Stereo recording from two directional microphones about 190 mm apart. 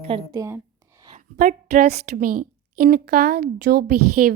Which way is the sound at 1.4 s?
50° right (ahead or behind).